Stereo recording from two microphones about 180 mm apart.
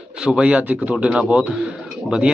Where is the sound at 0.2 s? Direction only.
5° right (ahead or behind).